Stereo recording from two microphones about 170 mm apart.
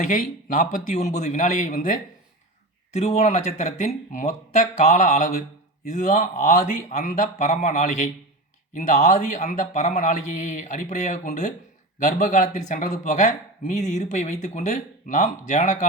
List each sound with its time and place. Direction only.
0.1 s speech: 50° left (ahead or behind)
2.9 s speech: 40° left (ahead or behind)